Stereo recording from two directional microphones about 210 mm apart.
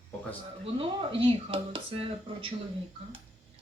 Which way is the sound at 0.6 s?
25° right (ahead or behind).